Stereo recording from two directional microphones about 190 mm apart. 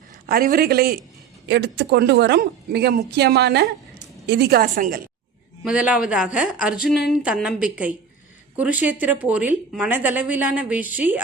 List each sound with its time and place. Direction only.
0.3 s a man's voice: 50° right (ahead or behind)
5.6 s a woman's voice: 5° right (ahead or behind)